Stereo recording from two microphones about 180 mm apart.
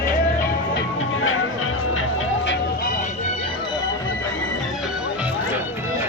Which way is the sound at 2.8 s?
45° left (ahead or behind).